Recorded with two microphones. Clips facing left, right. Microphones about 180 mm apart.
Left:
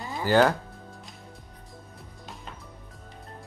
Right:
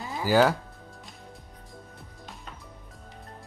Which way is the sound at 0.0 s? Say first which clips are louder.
Left 1 dB; 5° right (ahead or behind).